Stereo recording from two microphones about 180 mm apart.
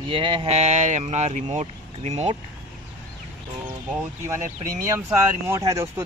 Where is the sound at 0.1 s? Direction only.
30° right (ahead or behind).